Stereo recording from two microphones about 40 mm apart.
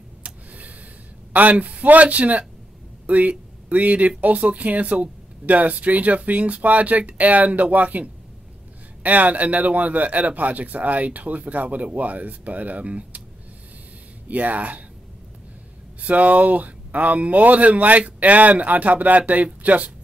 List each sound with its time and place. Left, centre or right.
0.2 s a sound: right
1.5 s speech: right
14.2 s speech: right
16.0 s speech: right